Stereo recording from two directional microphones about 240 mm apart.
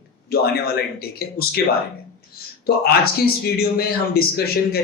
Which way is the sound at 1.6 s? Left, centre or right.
Left.